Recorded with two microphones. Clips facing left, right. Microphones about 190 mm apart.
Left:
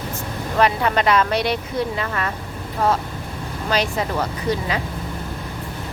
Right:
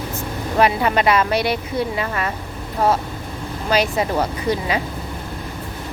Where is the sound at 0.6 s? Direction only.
10° right (ahead or behind).